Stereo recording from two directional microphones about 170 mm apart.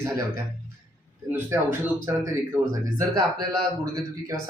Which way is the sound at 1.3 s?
15° right (ahead or behind).